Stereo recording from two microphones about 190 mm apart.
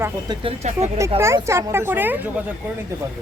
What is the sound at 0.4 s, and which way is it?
Speech, 35° right (ahead or behind).